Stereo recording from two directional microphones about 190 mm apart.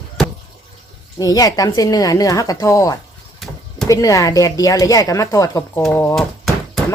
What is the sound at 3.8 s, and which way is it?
A woman's voice, 20° left (ahead or behind).